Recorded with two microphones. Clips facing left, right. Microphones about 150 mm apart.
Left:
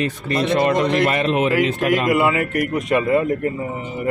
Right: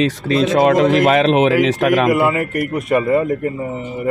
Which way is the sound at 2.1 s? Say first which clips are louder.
Right 2 dB; centre (ahead or behind).